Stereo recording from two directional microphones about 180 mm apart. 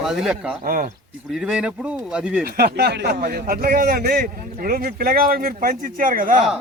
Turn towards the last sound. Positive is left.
turn(degrees=-50)  # may be behind; listen again after turning